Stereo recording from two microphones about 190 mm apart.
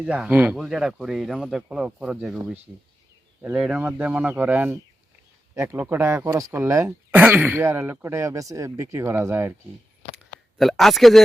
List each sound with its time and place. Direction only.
0.0 s speech: 5° right (ahead or behind)
3.4 s speech: 5° right (ahead or behind)
10.6 s speech: centre (ahead or behind)